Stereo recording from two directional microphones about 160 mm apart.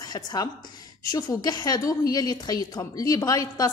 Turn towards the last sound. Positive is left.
turn(degrees=20)  # may be behind; listen again after turning